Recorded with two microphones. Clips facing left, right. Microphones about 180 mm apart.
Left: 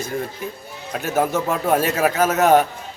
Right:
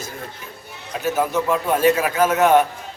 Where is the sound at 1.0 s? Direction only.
50° left (ahead or behind).